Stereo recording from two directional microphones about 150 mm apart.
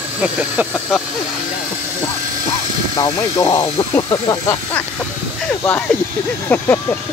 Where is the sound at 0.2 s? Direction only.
10° right (ahead or behind).